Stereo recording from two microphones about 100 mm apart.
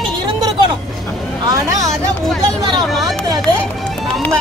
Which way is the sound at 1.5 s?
35° right (ahead or behind).